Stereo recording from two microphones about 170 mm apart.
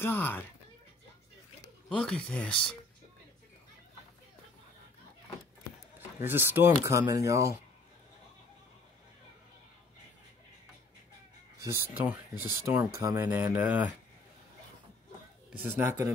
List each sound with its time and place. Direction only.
0.0 s speech: 10° left (ahead or behind)
1.9 s speech: 5° left (ahead or behind)
5.9 s speech: 10° right (ahead or behind)
11.6 s speech: 15° right (ahead or behind)
15.6 s speech: 15° right (ahead or behind)